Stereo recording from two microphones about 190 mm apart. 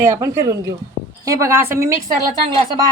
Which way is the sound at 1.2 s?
15° right (ahead or behind).